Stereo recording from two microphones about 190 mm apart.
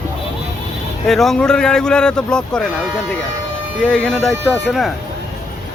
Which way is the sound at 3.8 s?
5° left (ahead or behind).